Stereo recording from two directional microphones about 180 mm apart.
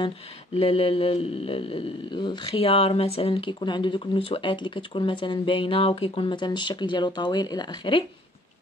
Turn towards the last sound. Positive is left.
turn(degrees=25)  # may be behind; listen again after turning